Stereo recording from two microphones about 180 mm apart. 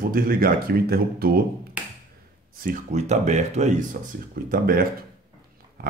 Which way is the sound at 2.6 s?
45° right (ahead or behind).